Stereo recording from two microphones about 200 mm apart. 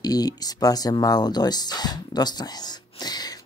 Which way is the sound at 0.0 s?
20° left (ahead or behind).